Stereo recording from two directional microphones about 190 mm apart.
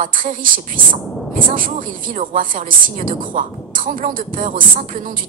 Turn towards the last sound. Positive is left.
turn(degrees=-45)  # may be behind; listen again after turning